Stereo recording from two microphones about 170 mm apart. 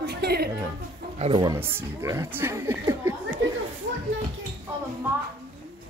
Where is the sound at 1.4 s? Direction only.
15° right (ahead or behind).